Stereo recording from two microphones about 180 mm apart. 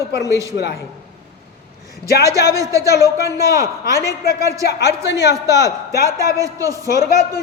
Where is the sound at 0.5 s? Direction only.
70° left (ahead or behind).